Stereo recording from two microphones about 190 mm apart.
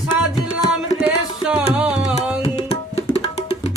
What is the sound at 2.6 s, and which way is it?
Tabla, 35° left (ahead or behind).